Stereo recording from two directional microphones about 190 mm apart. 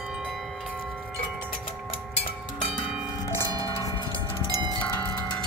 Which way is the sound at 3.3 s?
20° right (ahead or behind).